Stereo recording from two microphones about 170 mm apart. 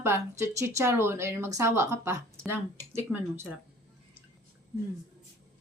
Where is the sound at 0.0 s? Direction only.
15° right (ahead or behind).